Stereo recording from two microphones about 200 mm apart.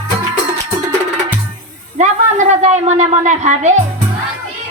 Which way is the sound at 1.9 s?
35° right (ahead or behind).